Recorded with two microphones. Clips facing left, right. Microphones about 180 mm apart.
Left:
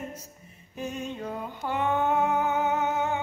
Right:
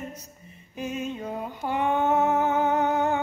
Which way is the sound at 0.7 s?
5° right (ahead or behind).